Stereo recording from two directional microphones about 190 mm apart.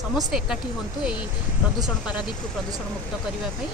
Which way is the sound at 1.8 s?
5° right (ahead or behind).